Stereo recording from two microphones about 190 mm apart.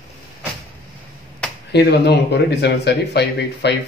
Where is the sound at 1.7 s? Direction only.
60° left (ahead or behind).